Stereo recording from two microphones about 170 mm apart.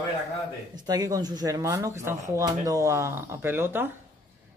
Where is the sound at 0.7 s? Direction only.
20° right (ahead or behind).